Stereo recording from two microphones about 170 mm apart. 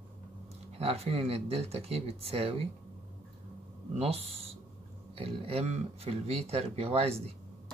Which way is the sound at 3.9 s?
35° right (ahead or behind).